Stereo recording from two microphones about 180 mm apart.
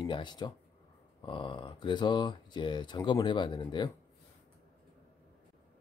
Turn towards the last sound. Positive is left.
turn(degrees=25)  # may be behind; listen again after turning